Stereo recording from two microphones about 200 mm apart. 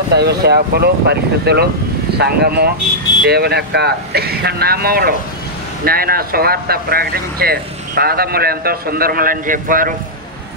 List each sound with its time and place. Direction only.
0.1 s speech: 55° right (ahead or behind)